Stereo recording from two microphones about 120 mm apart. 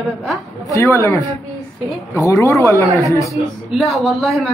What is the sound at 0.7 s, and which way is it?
Speech, 25° left (ahead or behind).